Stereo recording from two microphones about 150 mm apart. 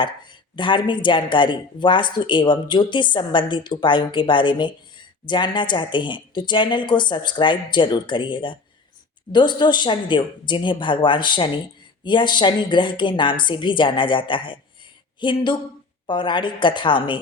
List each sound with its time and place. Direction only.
0.0 s speech: 30° left (ahead or behind)